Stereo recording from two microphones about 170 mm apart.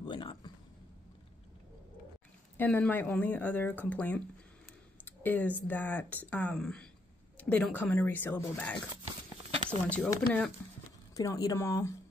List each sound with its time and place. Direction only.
0.0 s a sound: 30° left (ahead or behind)
2.5 s speech: 10° left (ahead or behind)
11.1 s speech: 20° left (ahead or behind)